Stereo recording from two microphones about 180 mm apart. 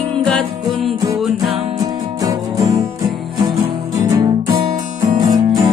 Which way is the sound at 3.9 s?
20° right (ahead or behind).